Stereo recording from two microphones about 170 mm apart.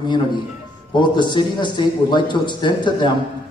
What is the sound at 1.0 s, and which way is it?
A man's voice, 25° left (ahead or behind).